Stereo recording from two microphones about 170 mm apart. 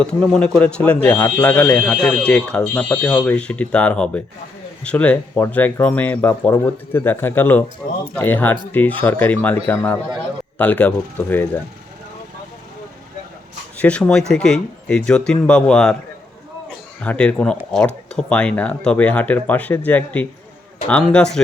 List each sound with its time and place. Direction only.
0.0 s speech: 5° left (ahead or behind)
13.7 s speech: 5° left (ahead or behind)
17.0 s speech: 5° left (ahead or behind)